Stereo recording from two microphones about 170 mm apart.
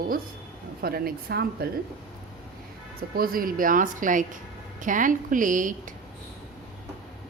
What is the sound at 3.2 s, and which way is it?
A woman's voice, 60° right (ahead or behind).